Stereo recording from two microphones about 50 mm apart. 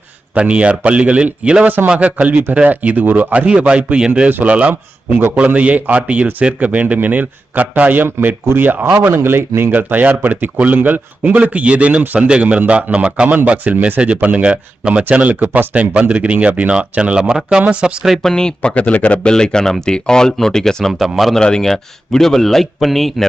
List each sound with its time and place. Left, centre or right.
0.3 s speech: right
1.6 s speech: right
1.9 s speech: right
4.3 s speech: right
5.5 s speech: right
9.7 s speech: right; by 17.6 s centre
17.6 s speech: right
18.0 s speech: centre
18.7 s a man's voice: left
19.3 s a man's voice: centre